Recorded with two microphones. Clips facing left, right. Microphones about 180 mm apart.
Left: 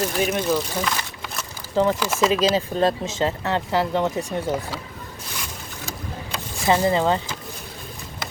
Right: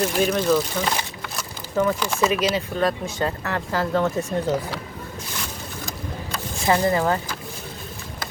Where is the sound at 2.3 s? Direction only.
30° left (ahead or behind).